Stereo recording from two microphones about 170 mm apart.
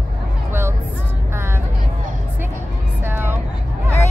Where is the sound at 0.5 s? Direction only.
15° right (ahead or behind).